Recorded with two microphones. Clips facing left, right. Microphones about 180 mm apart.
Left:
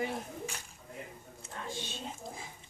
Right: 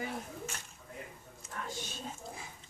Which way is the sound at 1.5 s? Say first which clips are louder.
Left 1 dB; 25° left (ahead or behind).